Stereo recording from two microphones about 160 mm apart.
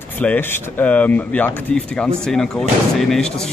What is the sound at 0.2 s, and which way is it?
Speech, 10° left (ahead or behind).